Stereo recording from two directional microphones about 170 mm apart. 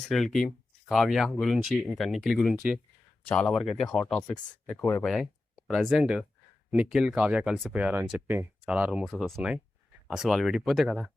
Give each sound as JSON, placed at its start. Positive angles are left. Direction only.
{"t": 0.1, "sound": "speech", "side_deg": 0}